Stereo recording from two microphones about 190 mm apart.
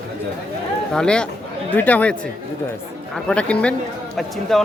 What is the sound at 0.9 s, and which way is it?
Speech, 5° left (ahead or behind).